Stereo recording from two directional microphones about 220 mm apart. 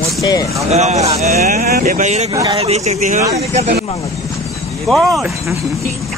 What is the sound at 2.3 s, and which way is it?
Speech, 20° right (ahead or behind).